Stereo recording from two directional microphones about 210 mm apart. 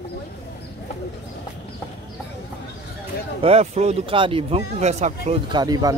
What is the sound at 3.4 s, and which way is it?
Speech, 30° right (ahead or behind).